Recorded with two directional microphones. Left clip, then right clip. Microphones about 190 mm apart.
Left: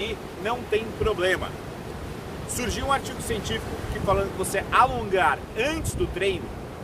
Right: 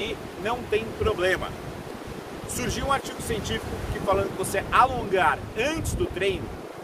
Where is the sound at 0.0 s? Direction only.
Centre (ahead or behind).